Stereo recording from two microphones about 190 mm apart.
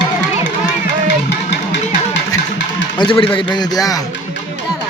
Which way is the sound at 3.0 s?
25° left (ahead or behind).